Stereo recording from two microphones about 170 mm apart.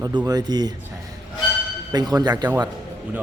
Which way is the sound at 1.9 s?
25° right (ahead or behind).